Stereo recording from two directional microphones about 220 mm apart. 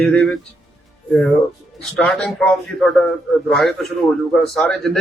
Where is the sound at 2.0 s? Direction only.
Centre (ahead or behind).